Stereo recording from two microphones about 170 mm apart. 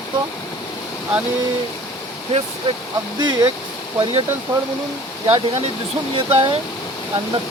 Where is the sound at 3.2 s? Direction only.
25° right (ahead or behind).